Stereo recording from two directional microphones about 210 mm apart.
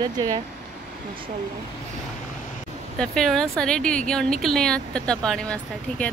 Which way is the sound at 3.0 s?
Centre (ahead or behind).